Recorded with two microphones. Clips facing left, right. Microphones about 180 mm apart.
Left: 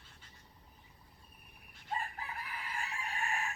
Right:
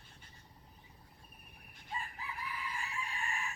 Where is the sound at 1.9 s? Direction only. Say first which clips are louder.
Left 4 dB; 55° left (ahead or behind).